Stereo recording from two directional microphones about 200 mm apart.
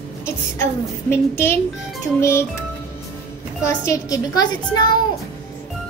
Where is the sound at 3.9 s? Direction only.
15° left (ahead or behind).